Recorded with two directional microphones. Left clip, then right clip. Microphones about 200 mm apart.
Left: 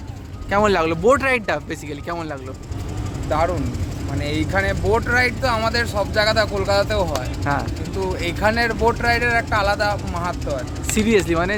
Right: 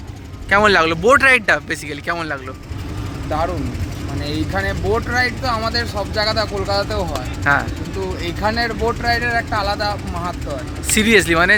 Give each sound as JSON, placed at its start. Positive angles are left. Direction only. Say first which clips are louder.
{"t": 0.5, "sound": "speech", "louder": "right 4 dB", "side_deg": 10}
{"t": 4.5, "sound": "speech", "louder": "left 1 dB", "side_deg": 25}
{"t": 7.4, "sound": "speech", "louder": "right 8 dB", "side_deg": 5}
{"t": 8.2, "sound": "speech", "louder": "left 1 dB", "side_deg": 30}
{"t": 10.9, "sound": "speech", "louder": "right 5 dB", "side_deg": 0}